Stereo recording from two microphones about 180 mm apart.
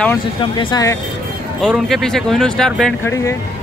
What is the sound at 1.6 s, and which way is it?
Speech, centre (ahead or behind).